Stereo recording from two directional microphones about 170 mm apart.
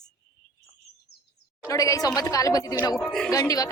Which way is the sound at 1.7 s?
20° left (ahead or behind).